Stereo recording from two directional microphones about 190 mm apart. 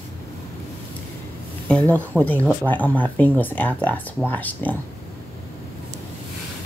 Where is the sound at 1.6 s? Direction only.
5° left (ahead or behind).